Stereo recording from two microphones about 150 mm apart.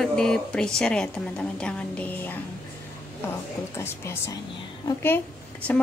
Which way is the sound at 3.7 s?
15° left (ahead or behind).